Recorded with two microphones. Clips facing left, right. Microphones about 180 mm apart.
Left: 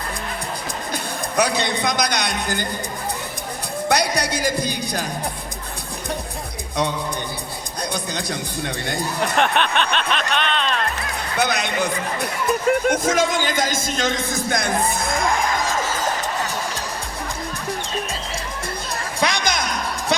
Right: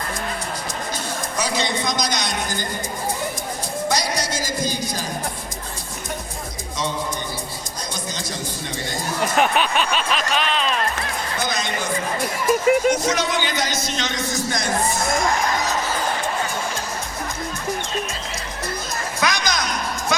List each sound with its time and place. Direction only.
1.4 s a man's voice: 60° left (ahead or behind)
3.8 s a man's voice: 60° left (ahead or behind)
7.9 s speech: 60° left (ahead or behind)
9.2 s music: 5° right (ahead or behind)
11.3 s a sound: 65° left (ahead or behind)
12.6 s speech: 5° right (ahead or behind)
12.9 s a man's voice: 50° left (ahead or behind)
19.2 s a sound: 30° left (ahead or behind)